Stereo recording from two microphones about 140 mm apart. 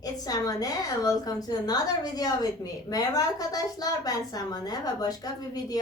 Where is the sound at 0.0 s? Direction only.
25° left (ahead or behind).